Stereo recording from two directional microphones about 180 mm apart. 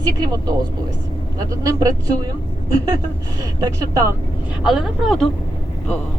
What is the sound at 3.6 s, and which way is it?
Speech, 20° right (ahead or behind).